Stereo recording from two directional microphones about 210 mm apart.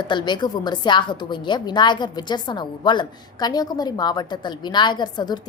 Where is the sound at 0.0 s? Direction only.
20° left (ahead or behind).